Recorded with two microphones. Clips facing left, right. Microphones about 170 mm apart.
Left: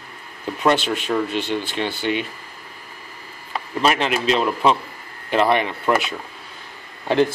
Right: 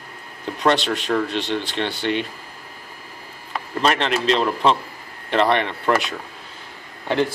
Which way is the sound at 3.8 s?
5° left (ahead or behind).